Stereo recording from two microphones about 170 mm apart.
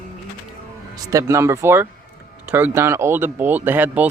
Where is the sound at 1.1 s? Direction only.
15° right (ahead or behind).